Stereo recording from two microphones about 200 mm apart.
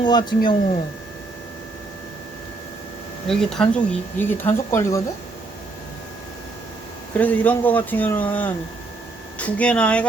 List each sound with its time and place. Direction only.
0.0 s speech: 20° left (ahead or behind)
3.2 s speech: centre (ahead or behind)
7.2 s speech: 10° left (ahead or behind)